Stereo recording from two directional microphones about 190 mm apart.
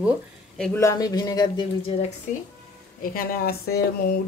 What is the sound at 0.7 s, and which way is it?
Speech, 20° left (ahead or behind).